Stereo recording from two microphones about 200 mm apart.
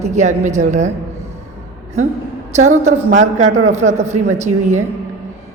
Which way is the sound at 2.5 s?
35° right (ahead or behind).